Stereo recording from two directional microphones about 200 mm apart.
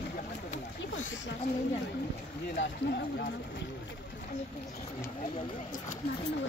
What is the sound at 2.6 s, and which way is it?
Speech, 55° left (ahead or behind).